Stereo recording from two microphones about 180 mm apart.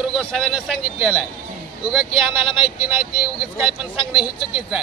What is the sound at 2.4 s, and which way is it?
Speech, 30° left (ahead or behind).